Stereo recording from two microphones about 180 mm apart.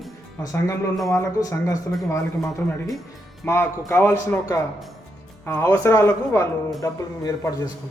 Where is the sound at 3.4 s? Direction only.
15° left (ahead or behind).